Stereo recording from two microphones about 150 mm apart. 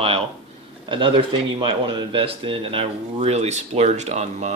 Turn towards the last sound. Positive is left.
turn(degrees=-50)  # may be behind; listen again after turning